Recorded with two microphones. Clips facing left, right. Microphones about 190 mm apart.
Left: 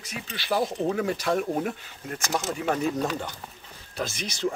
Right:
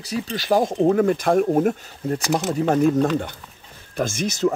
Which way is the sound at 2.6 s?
50° right (ahead or behind).